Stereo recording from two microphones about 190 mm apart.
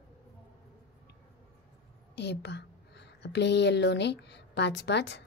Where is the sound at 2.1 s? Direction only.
65° left (ahead or behind).